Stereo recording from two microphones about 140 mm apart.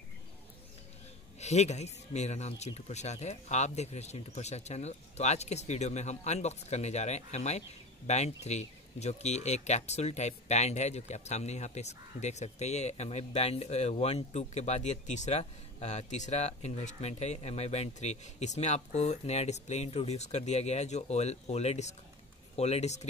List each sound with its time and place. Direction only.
1.4 s speech: 55° left (ahead or behind)